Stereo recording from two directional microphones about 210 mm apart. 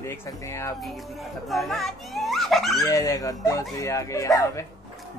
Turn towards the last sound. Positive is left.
turn(degrees=15)  # may be behind; listen again after turning